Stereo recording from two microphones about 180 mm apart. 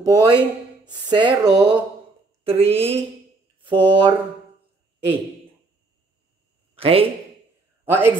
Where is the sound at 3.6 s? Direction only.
25° right (ahead or behind).